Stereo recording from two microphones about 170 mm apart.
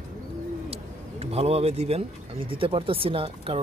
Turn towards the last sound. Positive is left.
turn(degrees=-35)  # may be behind; listen again after turning